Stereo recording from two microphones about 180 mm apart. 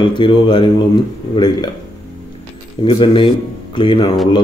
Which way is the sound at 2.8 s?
30° left (ahead or behind).